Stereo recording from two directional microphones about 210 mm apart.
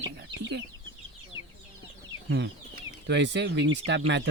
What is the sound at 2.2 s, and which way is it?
Speech, 55° right (ahead or behind).